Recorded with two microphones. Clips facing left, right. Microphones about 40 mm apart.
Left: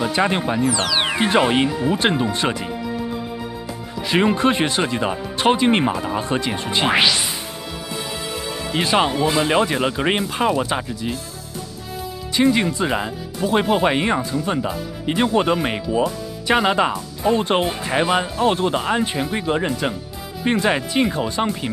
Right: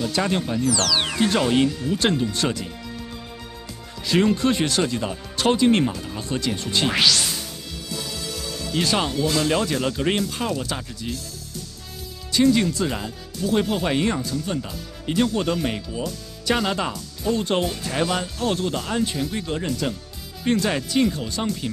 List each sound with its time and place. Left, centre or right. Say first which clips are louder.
0.0 s speech: left 4 dB; left
12.4 s speech: left 1 dB; left